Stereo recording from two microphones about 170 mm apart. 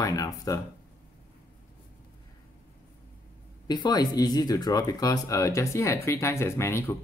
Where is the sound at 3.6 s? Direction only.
25° left (ahead or behind).